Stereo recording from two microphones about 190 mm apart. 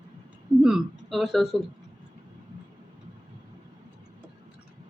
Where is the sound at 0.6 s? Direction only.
Centre (ahead or behind).